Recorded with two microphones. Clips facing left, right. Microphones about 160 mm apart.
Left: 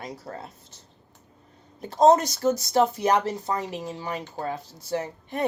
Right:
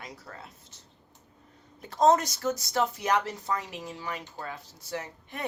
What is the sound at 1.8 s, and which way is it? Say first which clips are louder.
Speech: left 5 dB; 30° left (ahead or behind).